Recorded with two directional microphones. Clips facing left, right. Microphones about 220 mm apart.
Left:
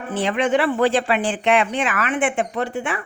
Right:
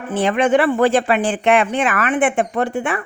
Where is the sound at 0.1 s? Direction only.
50° right (ahead or behind).